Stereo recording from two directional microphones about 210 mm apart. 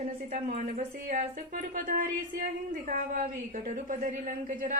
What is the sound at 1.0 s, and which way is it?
A man's voice, 40° right (ahead or behind).